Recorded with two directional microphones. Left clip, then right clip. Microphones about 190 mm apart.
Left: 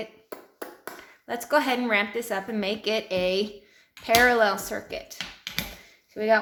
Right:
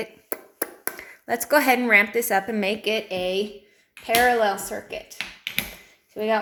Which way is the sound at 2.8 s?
Centre (ahead or behind).